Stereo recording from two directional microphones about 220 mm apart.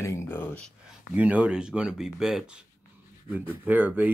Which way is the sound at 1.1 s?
5° right (ahead or behind).